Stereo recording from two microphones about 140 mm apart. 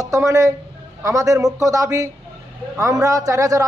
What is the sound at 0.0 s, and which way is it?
A man's voice, 25° right (ahead or behind).